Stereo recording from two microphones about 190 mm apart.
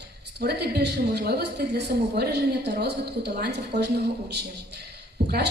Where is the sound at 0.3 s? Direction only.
60° right (ahead or behind).